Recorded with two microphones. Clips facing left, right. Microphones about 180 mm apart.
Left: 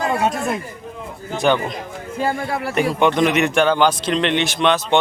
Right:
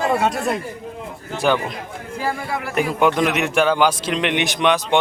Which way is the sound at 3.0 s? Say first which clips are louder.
Left 2 dB; 5° right (ahead or behind).